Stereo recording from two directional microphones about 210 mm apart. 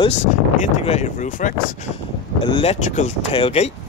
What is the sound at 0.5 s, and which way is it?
Speech, 35° left (ahead or behind).